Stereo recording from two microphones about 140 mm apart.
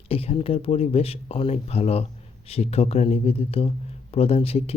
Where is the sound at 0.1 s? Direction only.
45° left (ahead or behind).